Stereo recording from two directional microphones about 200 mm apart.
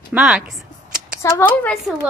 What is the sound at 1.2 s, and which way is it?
Speech, 10° left (ahead or behind).